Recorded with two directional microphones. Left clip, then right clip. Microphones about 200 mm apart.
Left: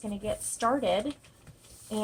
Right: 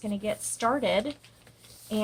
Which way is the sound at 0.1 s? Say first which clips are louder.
Right 2 dB; 20° right (ahead or behind).